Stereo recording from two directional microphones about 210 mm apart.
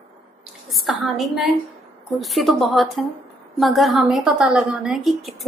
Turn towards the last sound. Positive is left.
turn(degrees=0)  # may be behind; listen again after turning